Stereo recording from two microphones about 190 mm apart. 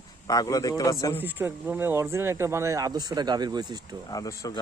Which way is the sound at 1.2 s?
10° right (ahead or behind).